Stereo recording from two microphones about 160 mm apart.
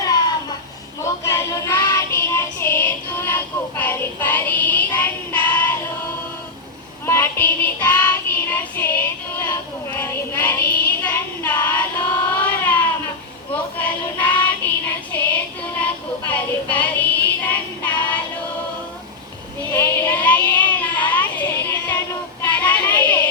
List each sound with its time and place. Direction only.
1.2 s music: 15° left (ahead or behind)
7.0 s child singing: 15° left (ahead or behind)
12.3 s cat: 10° left (ahead or behind)
13.5 s child singing: 10° left (ahead or behind)
15.8 s music: 10° left (ahead or behind)
19.7 s child singing: 10° left (ahead or behind)